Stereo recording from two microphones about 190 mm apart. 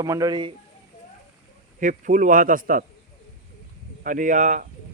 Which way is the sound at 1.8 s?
45° right (ahead or behind).